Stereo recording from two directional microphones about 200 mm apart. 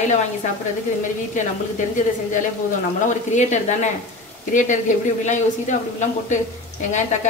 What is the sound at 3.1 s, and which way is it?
A man's voice, 35° left (ahead or behind).